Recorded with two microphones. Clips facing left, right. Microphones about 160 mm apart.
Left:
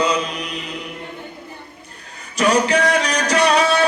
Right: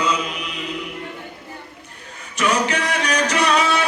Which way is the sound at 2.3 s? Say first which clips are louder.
Left 4 dB; 35° left (ahead or behind).